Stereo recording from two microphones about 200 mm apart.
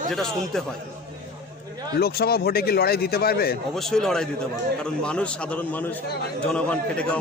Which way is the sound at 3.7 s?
Centre (ahead or behind).